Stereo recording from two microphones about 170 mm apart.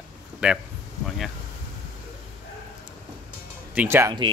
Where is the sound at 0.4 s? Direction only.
5° right (ahead or behind).